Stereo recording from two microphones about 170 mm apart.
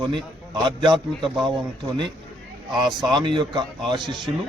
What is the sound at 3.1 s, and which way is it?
Speech, 30° right (ahead or behind).